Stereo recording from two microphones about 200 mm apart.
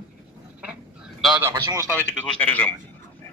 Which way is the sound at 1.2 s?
5° right (ahead or behind).